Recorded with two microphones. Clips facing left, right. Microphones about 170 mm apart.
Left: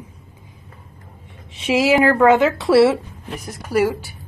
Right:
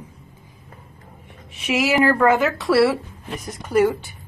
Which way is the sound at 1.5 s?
30° left (ahead or behind).